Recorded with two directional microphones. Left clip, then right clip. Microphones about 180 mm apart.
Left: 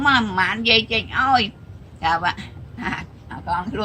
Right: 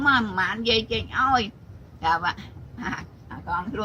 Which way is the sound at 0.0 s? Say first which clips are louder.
Left 4 dB; 15° left (ahead or behind).